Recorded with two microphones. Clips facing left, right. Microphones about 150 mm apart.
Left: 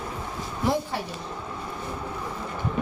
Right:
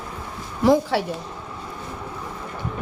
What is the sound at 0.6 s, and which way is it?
Speech, 90° right.